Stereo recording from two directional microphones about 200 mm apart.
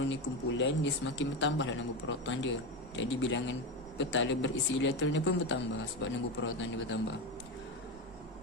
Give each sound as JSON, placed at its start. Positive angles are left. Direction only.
{"t": 0.0, "sound": "a man's voice", "side_deg": 65}